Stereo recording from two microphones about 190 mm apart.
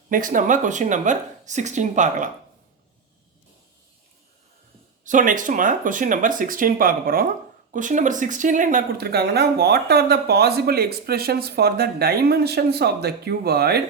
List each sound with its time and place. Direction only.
0.1 s a woman's voice: 45° right (ahead or behind)
5.0 s speech: 45° right (ahead or behind)